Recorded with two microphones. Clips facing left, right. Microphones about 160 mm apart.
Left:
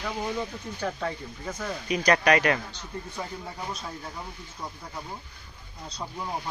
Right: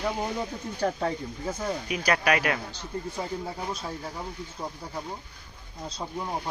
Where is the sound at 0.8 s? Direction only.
30° right (ahead or behind).